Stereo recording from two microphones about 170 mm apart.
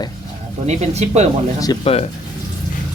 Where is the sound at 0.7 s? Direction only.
40° right (ahead or behind).